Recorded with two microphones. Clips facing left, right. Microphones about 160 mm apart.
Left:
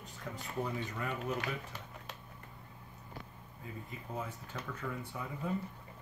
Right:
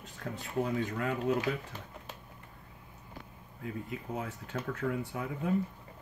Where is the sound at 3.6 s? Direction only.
85° right.